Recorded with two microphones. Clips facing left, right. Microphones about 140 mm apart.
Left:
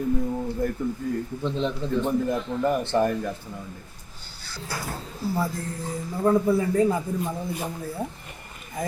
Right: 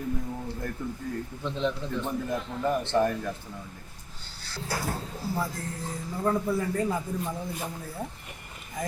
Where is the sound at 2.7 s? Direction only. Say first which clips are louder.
Even; 10° left (ahead or behind).